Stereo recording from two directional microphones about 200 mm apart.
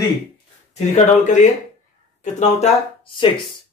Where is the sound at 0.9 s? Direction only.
35° left (ahead or behind).